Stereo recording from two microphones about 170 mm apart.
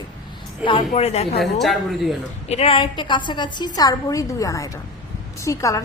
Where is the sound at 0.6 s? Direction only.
35° left (ahead or behind).